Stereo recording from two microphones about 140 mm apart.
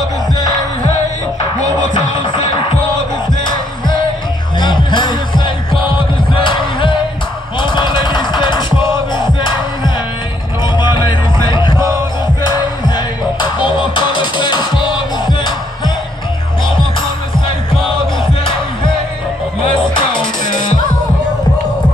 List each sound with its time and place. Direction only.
4.6 s music: 35° left (ahead or behind)
19.7 s music: 35° left (ahead or behind)